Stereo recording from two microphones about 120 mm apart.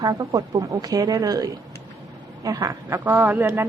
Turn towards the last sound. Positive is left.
turn(degrees=-15)  # may be behind; listen again after turning